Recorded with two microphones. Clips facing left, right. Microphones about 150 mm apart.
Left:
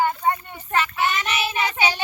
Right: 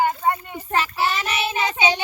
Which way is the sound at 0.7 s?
30° right (ahead or behind).